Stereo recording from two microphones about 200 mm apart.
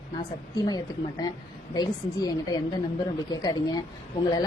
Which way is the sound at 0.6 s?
20° left (ahead or behind).